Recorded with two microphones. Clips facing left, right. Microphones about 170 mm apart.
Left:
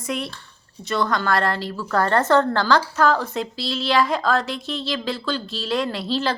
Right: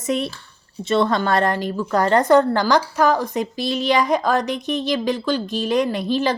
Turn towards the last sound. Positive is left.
turn(degrees=-15)  # may be behind; listen again after turning